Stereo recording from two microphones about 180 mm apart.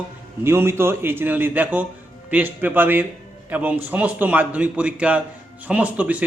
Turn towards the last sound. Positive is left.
turn(degrees=-10)  # may be behind; listen again after turning